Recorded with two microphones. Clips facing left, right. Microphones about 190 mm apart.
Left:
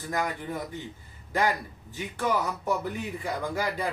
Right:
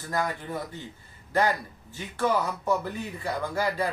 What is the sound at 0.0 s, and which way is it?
Speech, 15° left (ahead or behind).